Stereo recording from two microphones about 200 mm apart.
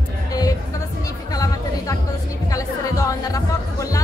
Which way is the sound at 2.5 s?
15° left (ahead or behind).